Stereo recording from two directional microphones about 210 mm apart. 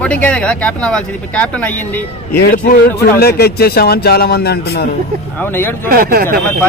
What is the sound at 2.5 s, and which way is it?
Speech, 45° left (ahead or behind).